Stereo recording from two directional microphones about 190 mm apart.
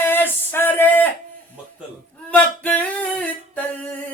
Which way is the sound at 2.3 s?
5° left (ahead or behind).